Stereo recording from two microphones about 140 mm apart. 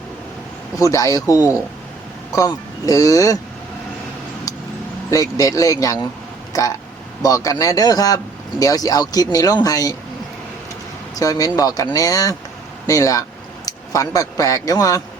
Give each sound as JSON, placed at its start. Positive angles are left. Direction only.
{"t": 0.8, "sound": "a man's voice", "side_deg": 25}
{"t": 5.1, "sound": "a man's voice", "side_deg": 25}
{"t": 11.2, "sound": "a man's voice", "side_deg": 25}